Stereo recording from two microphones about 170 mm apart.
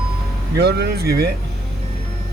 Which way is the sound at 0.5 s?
80° right.